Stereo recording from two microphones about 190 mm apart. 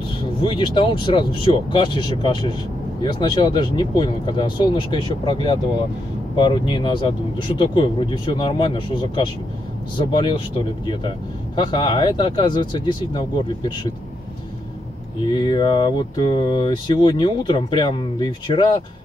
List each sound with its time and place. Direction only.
0.4 s speech: 25° left (ahead or behind)
15.3 s speech: 25° left (ahead or behind)